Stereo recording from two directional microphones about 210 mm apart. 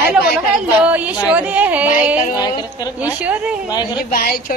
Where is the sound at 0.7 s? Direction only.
5° right (ahead or behind).